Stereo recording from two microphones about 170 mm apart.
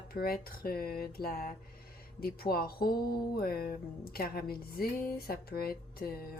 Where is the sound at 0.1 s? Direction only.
60° left (ahead or behind).